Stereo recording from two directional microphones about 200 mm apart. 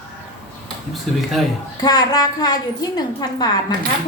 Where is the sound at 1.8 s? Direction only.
20° left (ahead or behind).